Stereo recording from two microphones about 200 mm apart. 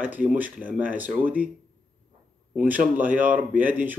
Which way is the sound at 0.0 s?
10° right (ahead or behind).